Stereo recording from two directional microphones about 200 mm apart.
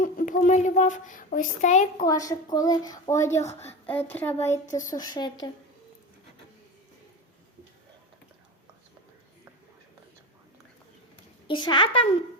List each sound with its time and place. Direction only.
0.0 s a sound: 40° left (ahead or behind)
2.0 s a woman's voice: 15° left (ahead or behind)
11.4 s a woman's voice: 25° left (ahead or behind)